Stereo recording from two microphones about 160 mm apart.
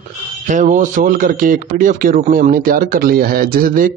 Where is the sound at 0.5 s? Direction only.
50° right (ahead or behind).